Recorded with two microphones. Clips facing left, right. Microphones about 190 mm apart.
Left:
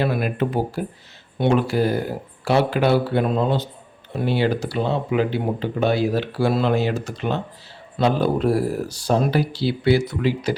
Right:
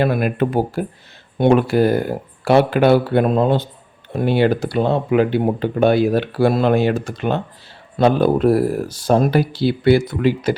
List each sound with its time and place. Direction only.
0.0 s speech: 55° right (ahead or behind)